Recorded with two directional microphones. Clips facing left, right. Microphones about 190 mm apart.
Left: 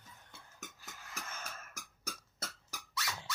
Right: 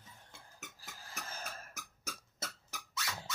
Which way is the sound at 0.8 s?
35° right (ahead or behind).